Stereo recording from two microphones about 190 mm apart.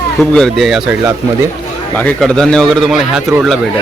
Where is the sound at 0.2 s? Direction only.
Centre (ahead or behind).